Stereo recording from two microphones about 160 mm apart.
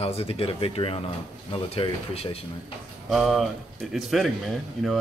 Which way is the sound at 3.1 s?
Centre (ahead or behind).